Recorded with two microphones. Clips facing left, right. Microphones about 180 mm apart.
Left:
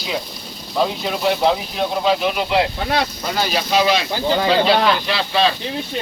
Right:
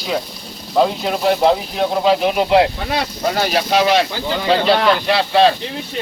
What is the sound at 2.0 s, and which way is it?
Speech, 35° right (ahead or behind).